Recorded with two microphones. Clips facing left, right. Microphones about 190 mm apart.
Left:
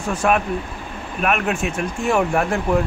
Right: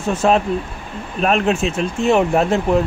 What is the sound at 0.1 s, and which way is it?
Speech, 25° right (ahead or behind).